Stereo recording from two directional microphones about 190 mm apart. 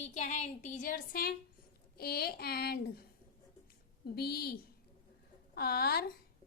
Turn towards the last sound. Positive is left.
turn(degrees=55)  # may be behind; listen again after turning